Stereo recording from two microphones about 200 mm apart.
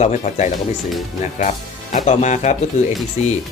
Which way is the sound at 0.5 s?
Centre (ahead or behind).